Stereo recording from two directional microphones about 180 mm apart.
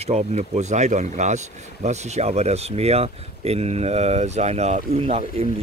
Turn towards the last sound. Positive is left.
turn(degrees=-35)  # may be behind; listen again after turning